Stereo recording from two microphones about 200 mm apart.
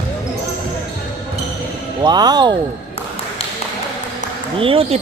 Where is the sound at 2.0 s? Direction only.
20° right (ahead or behind).